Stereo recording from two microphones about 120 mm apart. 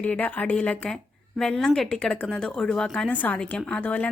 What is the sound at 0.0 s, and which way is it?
Speech, 10° left (ahead or behind).